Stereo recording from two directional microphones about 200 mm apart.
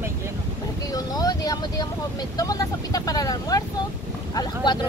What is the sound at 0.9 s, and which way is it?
Speech, 20° left (ahead or behind).